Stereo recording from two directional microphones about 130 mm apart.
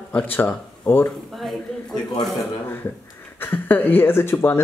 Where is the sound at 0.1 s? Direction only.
10° left (ahead or behind).